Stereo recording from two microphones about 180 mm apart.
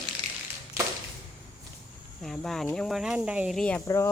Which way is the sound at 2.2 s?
Centre (ahead or behind).